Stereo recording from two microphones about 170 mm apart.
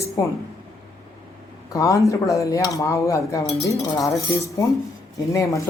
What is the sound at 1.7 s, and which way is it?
A woman's voice, 20° left (ahead or behind).